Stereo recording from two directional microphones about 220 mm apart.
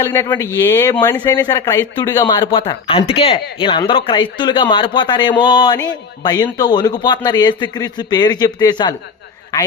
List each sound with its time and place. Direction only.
0.0 s speech: 10° left (ahead or behind)